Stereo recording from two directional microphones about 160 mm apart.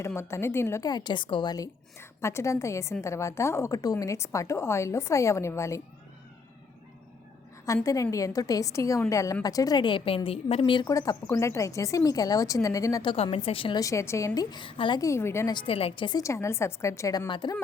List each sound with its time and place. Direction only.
0.0 s a woman's voice: 15° left (ahead or behind)
7.9 s a woman's voice: 20° left (ahead or behind)
13.7 s a woman's voice: 20° left (ahead or behind)
15.5 s a woman's voice: 35° left (ahead or behind)